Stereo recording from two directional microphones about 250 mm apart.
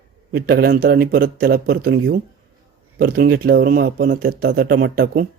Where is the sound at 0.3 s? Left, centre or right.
Right.